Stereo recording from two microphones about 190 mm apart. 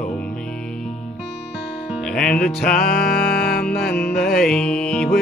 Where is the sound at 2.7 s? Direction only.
50° left (ahead or behind).